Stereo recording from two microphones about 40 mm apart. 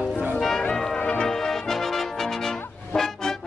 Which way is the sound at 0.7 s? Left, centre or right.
Centre.